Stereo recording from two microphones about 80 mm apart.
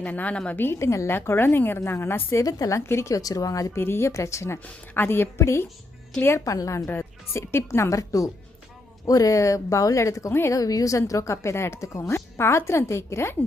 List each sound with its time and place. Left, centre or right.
0.0 s a woman's voice: centre
0.6 s a woman's voice: left
3.2 s speech: left
3.8 s a woman's voice: left
6.4 s a woman's voice: left